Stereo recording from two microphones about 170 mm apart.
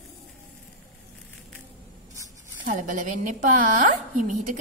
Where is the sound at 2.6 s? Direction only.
50° right (ahead or behind).